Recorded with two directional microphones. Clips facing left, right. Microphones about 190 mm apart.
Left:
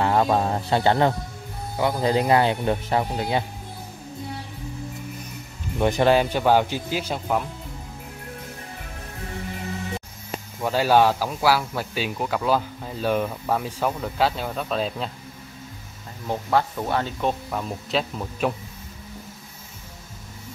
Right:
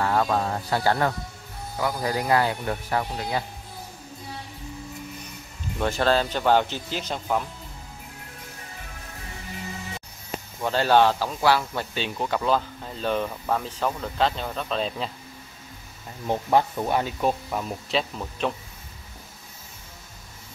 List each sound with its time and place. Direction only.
0.0 s speech: 25° left (ahead or behind)
5.8 s speech: 15° left (ahead or behind)
10.6 s speech: 5° left (ahead or behind)
16.3 s speech: 15° right (ahead or behind); by 18.5 s 5° left (ahead or behind)